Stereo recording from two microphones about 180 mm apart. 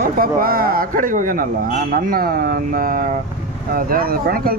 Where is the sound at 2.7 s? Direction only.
50° right (ahead or behind).